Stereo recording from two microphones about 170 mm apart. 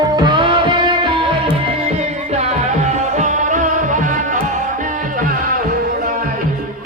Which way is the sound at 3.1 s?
45° right (ahead or behind).